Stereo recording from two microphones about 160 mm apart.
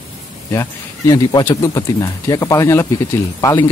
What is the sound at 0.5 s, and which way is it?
Speech, 15° left (ahead or behind).